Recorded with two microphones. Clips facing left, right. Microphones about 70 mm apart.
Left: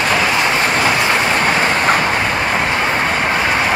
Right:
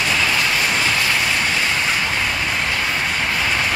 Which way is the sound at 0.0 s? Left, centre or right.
Left.